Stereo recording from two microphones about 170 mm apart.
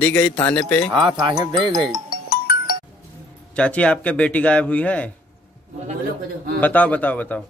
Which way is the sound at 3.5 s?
5° left (ahead or behind).